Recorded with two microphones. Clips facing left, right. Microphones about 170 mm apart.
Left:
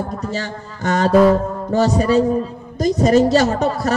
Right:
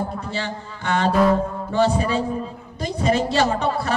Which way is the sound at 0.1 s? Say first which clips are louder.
Left 3 dB; 40° left (ahead or behind).